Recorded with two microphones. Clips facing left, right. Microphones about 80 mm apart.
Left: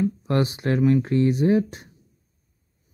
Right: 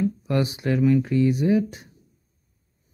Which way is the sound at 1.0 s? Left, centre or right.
Left.